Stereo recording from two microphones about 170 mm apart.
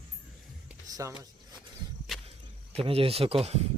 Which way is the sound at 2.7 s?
35° right (ahead or behind).